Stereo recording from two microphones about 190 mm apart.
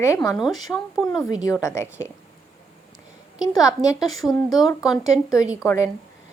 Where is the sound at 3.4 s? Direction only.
20° left (ahead or behind).